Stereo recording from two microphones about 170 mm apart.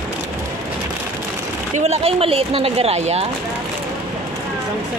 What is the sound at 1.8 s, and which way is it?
Speech, 35° right (ahead or behind).